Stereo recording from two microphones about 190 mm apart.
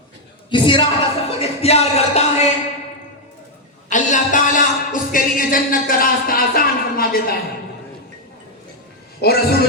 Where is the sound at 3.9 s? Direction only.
40° left (ahead or behind).